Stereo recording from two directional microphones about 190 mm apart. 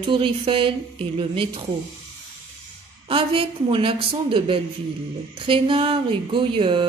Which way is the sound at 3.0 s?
30° right (ahead or behind).